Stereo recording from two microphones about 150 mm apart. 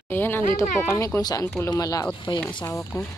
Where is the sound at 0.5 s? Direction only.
15° left (ahead or behind).